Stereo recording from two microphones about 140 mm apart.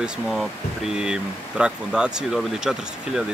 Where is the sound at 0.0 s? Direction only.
Centre (ahead or behind).